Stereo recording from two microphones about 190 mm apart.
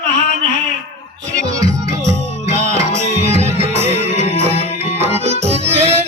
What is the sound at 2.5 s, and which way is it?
Music, 35° right (ahead or behind).